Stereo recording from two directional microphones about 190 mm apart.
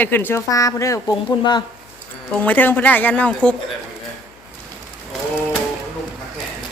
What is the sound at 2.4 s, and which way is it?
Speech, 10° left (ahead or behind).